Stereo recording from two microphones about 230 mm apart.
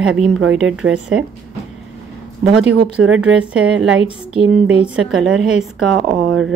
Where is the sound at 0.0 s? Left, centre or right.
Centre.